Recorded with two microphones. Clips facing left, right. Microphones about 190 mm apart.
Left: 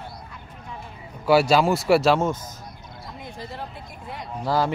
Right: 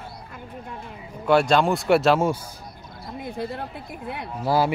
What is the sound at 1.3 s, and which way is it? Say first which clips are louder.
Speech: left 1 dB; 5° left (ahead or behind).